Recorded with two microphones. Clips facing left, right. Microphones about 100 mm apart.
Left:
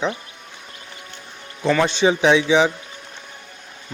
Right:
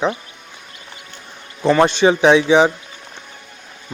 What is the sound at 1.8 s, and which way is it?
Speech, 55° right (ahead or behind).